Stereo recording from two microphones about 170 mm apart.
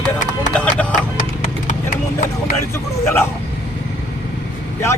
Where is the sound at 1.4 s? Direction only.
45° left (ahead or behind).